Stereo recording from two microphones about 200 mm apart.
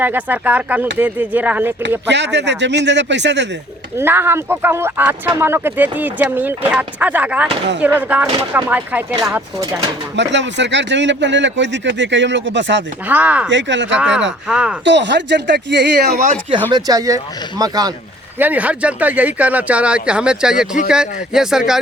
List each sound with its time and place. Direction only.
0.0 s speech: 10° right (ahead or behind)
2.0 s speech: 60° right (ahead or behind)
3.9 s speech: 10° right (ahead or behind)
10.2 s speech: 60° right (ahead or behind)
13.1 s speech: 10° right (ahead or behind)
13.5 s speech: 65° right (ahead or behind)
14.4 s speech: 5° right (ahead or behind)
14.8 s speech: 60° right (ahead or behind)
16.7 s speech: 20° right (ahead or behind)
18.3 s speech: 10° right (ahead or behind)